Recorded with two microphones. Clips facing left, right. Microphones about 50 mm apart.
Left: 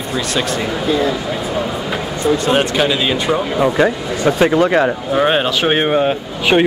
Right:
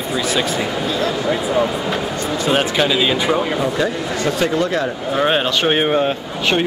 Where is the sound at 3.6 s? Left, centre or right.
Left.